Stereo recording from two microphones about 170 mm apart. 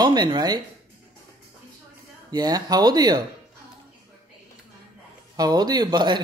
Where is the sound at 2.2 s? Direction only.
25° right (ahead or behind).